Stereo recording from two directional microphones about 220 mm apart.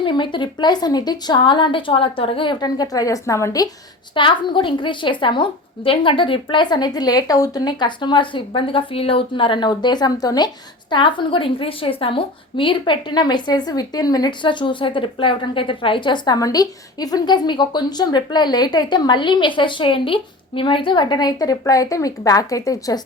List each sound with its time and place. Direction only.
0.0 s a woman's voice: 20° left (ahead or behind)